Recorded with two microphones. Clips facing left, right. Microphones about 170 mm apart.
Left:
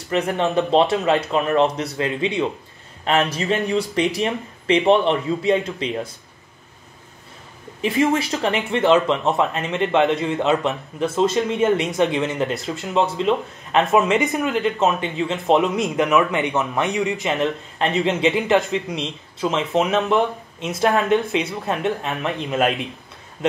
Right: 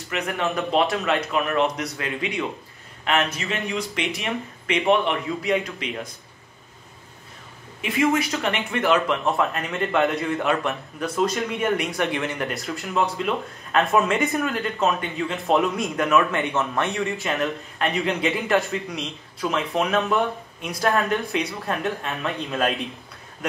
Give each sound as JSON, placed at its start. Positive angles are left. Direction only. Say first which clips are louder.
{"t": 0.1, "sound": "speech", "louder": "left 6 dB", "side_deg": 30}
{"t": 7.8, "sound": "speech", "louder": "left 2 dB", "side_deg": 30}